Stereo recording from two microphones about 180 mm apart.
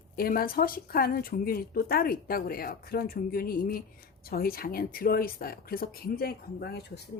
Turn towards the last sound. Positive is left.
turn(degrees=60)  # may be behind; listen again after turning